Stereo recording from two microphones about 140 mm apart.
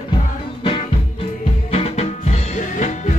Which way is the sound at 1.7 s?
50° left (ahead or behind).